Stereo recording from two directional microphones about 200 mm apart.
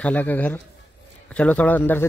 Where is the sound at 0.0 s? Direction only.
10° left (ahead or behind).